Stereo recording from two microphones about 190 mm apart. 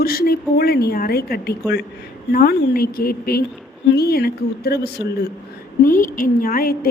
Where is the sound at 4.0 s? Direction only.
55° left (ahead or behind).